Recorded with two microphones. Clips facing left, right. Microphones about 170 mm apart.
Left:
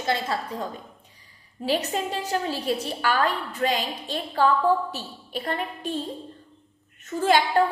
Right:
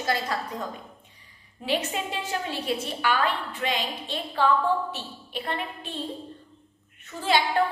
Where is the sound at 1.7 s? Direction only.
40° left (ahead or behind).